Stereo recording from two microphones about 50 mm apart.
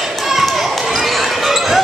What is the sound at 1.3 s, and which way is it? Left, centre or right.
Basketball bounce, centre.